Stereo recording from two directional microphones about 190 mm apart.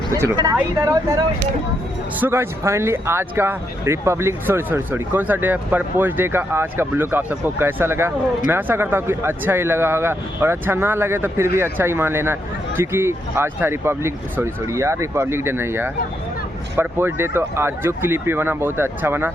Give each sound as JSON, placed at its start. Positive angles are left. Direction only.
{"t": 0.1, "sound": "speech", "side_deg": -20}
{"t": 2.2, "sound": "speech", "side_deg": -10}